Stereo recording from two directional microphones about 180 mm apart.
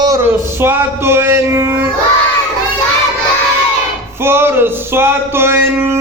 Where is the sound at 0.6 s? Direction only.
15° right (ahead or behind).